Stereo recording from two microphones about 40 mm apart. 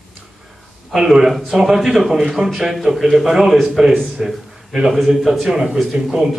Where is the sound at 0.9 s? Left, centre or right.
Centre.